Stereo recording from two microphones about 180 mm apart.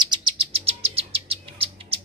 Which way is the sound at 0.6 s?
30° right (ahead or behind).